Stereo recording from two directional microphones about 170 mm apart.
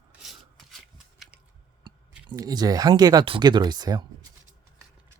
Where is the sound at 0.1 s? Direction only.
Centre (ahead or behind).